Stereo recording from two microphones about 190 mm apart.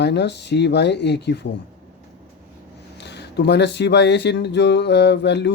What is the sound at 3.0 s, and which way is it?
Speech, 65° left (ahead or behind).